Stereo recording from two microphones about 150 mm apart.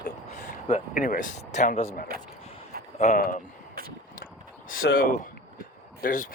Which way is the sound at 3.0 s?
50° left (ahead or behind).